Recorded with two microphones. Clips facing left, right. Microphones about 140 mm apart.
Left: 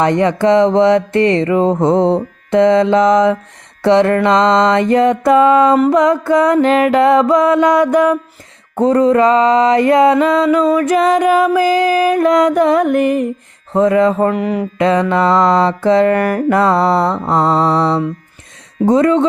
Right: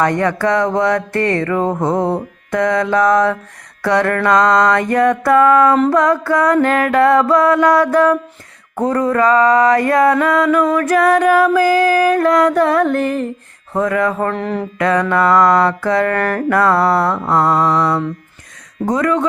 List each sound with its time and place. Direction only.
0.0 s mantra: 20° left (ahead or behind)
14.3 s mantra: 10° left (ahead or behind)
14.8 s mantra: 20° left (ahead or behind)
16.6 s mantra: 25° left (ahead or behind)